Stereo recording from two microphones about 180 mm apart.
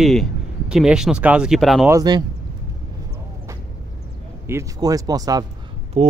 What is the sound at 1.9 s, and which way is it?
Speech, 20° right (ahead or behind).